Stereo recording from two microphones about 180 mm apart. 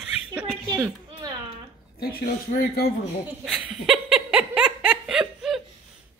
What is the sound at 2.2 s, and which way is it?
Speech, 55° left (ahead or behind).